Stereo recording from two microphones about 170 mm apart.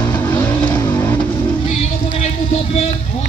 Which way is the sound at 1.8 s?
40° left (ahead or behind).